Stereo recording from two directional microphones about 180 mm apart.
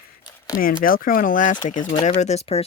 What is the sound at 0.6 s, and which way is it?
Speech, 50° left (ahead or behind).